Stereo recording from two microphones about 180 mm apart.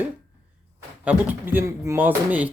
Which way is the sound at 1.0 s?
10° right (ahead or behind).